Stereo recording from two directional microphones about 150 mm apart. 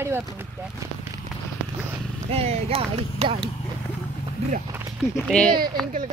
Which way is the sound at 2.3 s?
45° right (ahead or behind).